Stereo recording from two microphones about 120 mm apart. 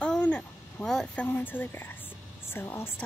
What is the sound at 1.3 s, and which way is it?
A woman's voice, 15° left (ahead or behind).